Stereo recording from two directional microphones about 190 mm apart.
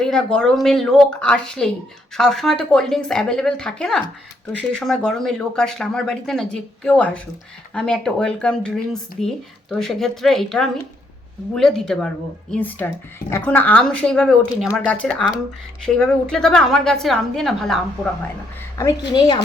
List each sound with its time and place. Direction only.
0.0 s speech: 5° left (ahead or behind)
18.8 s speech: 15° left (ahead or behind)